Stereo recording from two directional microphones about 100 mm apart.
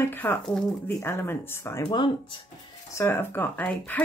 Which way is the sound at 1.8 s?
50° left (ahead or behind).